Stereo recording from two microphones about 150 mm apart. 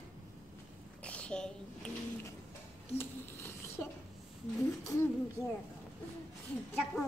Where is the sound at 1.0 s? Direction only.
10° left (ahead or behind).